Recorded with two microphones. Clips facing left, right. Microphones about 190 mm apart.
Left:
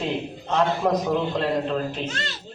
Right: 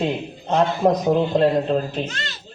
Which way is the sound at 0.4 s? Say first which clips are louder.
Right 4 dB; 30° right (ahead or behind).